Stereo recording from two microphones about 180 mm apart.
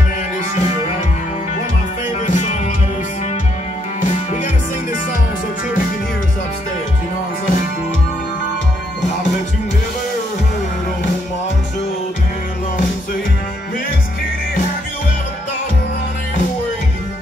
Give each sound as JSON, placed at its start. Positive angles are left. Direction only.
{"t": 2.2, "sound": "music", "side_deg": 45}